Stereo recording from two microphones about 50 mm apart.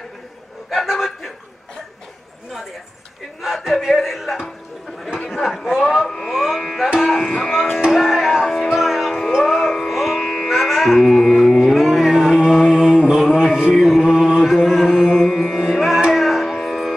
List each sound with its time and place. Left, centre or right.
0.7 s chuckle: centre
3.4 s speech: centre
5.4 s speech: centre
6.0 s music: centre
6.3 s speech: centre
6.6 s music: centre
7.0 s speech: centre
7.9 s music: centre
12.5 s mantra: centre
13.5 s a sound: centre
13.7 s chant: centre
15.2 s carnatic music: centre
16.1 s music: centre